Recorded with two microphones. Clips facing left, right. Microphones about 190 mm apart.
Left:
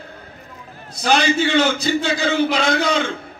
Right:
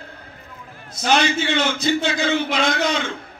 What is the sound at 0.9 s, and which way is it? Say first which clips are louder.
A man's voice: left 2 dB; 35° left (ahead or behind).